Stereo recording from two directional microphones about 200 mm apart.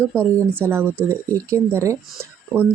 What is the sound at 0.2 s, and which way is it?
Speech, 10° right (ahead or behind).